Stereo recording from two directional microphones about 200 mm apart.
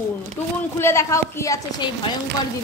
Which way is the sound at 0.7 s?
15° left (ahead or behind).